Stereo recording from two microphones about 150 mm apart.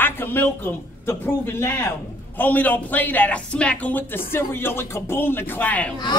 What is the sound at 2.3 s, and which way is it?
A man's voice, 10° left (ahead or behind).